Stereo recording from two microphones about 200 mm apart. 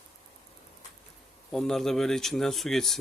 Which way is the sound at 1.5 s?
Centre (ahead or behind).